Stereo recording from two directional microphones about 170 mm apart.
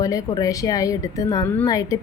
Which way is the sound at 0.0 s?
20° left (ahead or behind).